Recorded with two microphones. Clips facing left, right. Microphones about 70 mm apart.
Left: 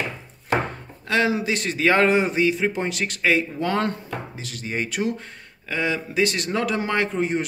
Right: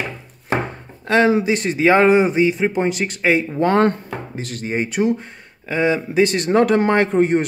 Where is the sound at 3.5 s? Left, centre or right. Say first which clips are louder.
Right 8 dB; right.